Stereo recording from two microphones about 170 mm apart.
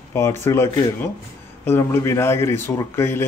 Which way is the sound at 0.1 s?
15° left (ahead or behind).